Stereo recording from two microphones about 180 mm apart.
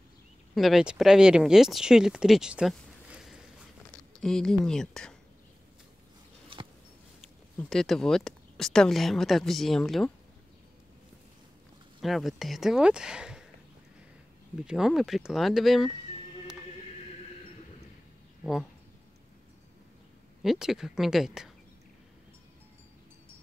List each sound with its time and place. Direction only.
0.6 s speech: centre (ahead or behind)
6.5 s a sound: 30° right (ahead or behind)
7.5 s speech: centre (ahead or behind)
12.0 s speech: centre (ahead or behind)
14.6 s speech: 5° right (ahead or behind)
18.4 s speech: centre (ahead or behind)
20.4 s speech: centre (ahead or behind)